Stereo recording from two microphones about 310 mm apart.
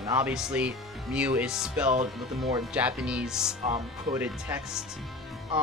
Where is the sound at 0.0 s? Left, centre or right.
Centre.